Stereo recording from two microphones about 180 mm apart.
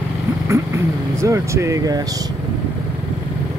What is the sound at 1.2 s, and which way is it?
Speech, 15° right (ahead or behind).